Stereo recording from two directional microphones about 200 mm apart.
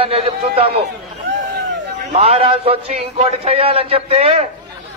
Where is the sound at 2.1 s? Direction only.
30° right (ahead or behind).